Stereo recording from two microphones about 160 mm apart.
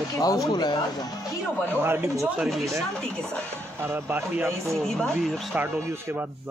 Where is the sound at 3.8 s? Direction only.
15° right (ahead or behind).